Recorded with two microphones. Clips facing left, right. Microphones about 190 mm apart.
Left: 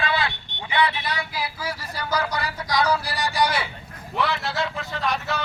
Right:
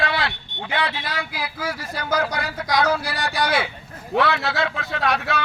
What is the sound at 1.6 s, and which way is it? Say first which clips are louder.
Speech: right 3 dB; 50° right (ahead or behind).